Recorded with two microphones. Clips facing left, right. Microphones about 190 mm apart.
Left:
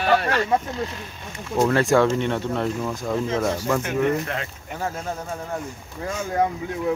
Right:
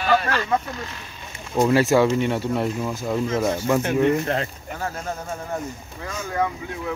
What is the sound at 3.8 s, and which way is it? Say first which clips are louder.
Speech: right 3 dB; 30° right (ahead or behind).